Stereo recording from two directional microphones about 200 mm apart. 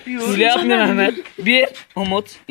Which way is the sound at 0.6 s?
Centre (ahead or behind).